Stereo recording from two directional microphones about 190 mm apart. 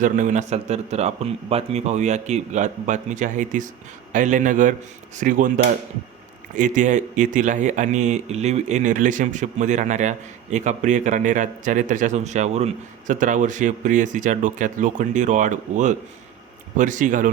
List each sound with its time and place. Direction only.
0.0 s a man's voice: 40° right (ahead or behind)